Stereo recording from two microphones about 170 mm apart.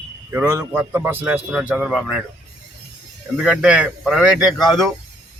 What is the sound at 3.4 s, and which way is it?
A man's voice, 5° right (ahead or behind).